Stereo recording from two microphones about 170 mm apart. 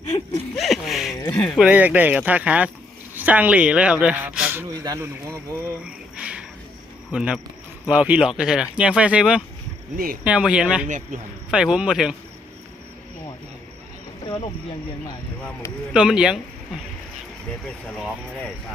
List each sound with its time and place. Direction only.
0.1 s a sound: 20° left (ahead or behind)
0.5 s a sound: centre (ahead or behind)
1.4 s speech: centre (ahead or behind)
4.8 s speech: 20° right (ahead or behind)
5.8 s a sound: 5° right (ahead or behind)
7.1 s speech: 5° right (ahead or behind)
10.8 s speech: 50° right (ahead or behind)
11.5 s speech: 5° right (ahead or behind)
15.4 s speech: 5° left (ahead or behind)
15.9 s speech: 5° right (ahead or behind)